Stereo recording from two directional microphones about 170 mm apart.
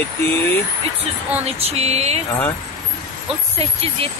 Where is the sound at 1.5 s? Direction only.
40° right (ahead or behind).